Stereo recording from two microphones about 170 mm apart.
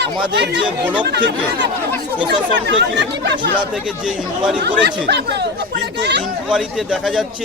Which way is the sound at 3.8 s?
5° right (ahead or behind).